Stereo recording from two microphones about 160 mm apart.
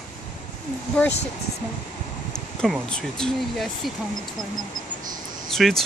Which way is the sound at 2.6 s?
5° left (ahead or behind).